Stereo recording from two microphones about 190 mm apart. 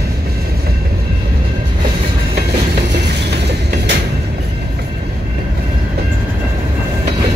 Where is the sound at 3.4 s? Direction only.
60° right (ahead or behind).